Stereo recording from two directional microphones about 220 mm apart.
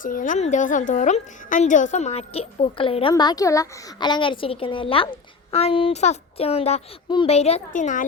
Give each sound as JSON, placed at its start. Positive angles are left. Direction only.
{"t": 0.0, "sound": "a woman's voice", "side_deg": 35}